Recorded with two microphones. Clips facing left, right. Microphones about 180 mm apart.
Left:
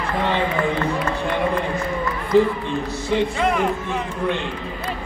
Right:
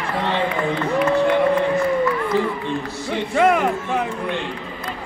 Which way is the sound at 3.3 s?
65° right (ahead or behind).